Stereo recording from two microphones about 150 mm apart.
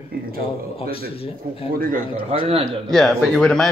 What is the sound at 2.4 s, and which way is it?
Speech, 40° right (ahead or behind).